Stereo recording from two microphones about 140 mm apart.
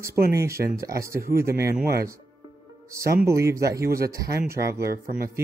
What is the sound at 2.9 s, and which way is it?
Speech, 20° right (ahead or behind).